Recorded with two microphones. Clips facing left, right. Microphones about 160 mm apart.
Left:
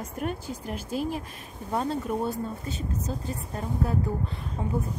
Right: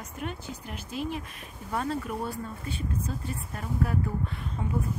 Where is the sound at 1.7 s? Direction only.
30° left (ahead or behind).